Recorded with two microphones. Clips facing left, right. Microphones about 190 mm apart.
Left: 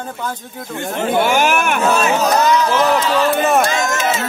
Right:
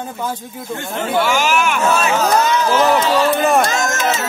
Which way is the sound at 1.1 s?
55° left (ahead or behind).